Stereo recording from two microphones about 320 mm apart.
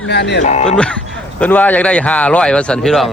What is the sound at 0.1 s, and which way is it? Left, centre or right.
Speech, left.